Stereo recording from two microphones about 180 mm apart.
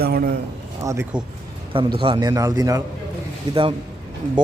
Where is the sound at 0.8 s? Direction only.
15° right (ahead or behind).